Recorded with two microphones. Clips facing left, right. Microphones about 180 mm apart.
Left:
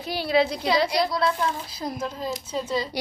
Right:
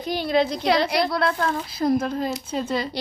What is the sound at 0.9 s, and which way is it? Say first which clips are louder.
Speech: right 1 dB; 60° right (ahead or behind).